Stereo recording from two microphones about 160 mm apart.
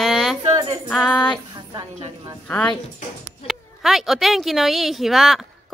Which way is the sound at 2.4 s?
10° left (ahead or behind).